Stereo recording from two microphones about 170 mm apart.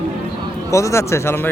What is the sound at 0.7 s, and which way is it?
Speech, 15° left (ahead or behind).